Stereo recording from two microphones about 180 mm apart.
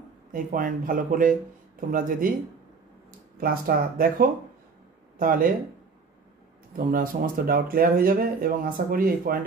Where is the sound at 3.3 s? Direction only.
55° right (ahead or behind).